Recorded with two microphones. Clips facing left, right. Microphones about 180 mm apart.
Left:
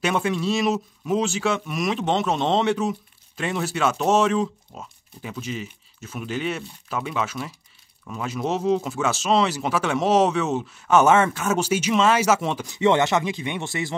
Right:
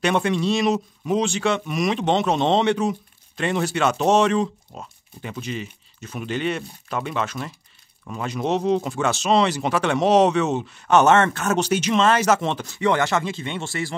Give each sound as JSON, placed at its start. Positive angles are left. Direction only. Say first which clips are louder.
{"t": 0.0, "sound": "speech", "louder": "right 2 dB", "side_deg": 5}